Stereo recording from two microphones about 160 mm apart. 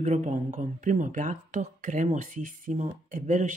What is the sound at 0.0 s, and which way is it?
Speech, 45° right (ahead or behind).